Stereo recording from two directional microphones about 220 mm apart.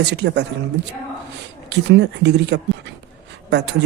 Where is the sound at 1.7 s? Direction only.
50° right (ahead or behind).